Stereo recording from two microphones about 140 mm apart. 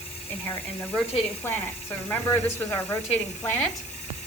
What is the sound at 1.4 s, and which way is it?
Speech, 15° left (ahead or behind).